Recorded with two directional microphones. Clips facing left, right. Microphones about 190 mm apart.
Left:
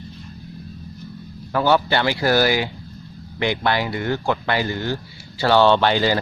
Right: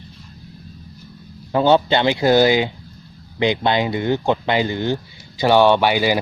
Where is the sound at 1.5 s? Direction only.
20° right (ahead or behind).